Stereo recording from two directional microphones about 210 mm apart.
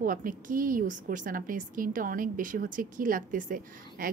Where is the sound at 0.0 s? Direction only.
40° right (ahead or behind).